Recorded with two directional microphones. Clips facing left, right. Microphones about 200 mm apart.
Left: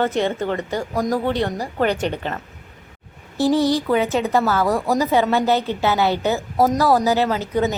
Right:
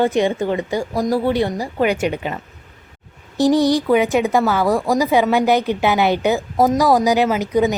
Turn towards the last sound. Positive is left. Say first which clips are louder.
# right 4 dB
turn(degrees=-15)  # may be behind; listen again after turning